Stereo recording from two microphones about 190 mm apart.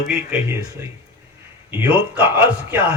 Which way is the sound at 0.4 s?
15° right (ahead or behind).